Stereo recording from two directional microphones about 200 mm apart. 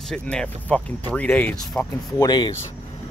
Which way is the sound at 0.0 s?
5° left (ahead or behind).